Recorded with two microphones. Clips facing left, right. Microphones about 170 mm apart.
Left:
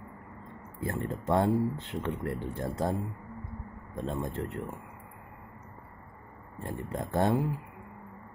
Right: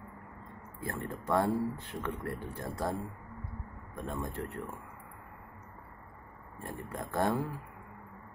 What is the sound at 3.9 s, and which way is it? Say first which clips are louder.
Speech: left 4 dB; 20° left (ahead or behind).